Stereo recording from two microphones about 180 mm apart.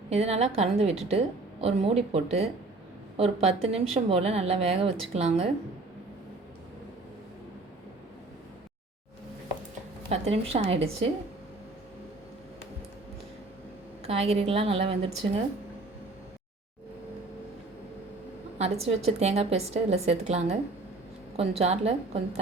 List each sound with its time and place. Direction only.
0.1 s a woman's voice: 35° right (ahead or behind)
10.1 s a woman's voice: 35° right (ahead or behind)
14.1 s a woman's voice: 35° right (ahead or behind)
18.6 s a woman's voice: 35° right (ahead or behind)